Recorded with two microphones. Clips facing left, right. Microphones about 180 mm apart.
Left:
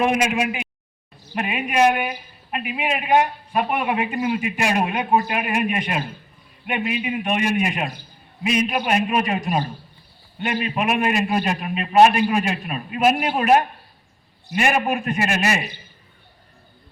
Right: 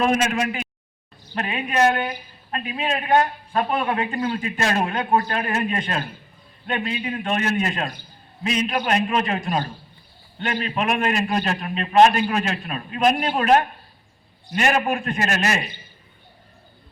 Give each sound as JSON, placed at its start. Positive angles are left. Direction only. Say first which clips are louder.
{"t": 0.0, "sound": "speech", "louder": "left 1 dB", "side_deg": 15}